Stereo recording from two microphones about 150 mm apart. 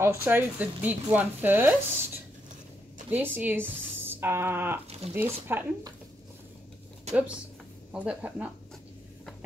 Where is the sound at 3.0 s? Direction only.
15° right (ahead or behind).